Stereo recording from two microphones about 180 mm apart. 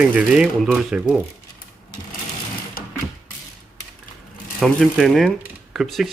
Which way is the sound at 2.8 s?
55° left (ahead or behind).